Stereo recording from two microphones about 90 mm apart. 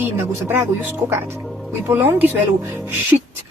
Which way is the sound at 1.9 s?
25° right (ahead or behind).